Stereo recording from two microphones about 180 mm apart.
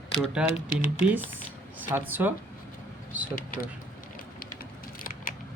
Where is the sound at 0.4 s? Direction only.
5° right (ahead or behind).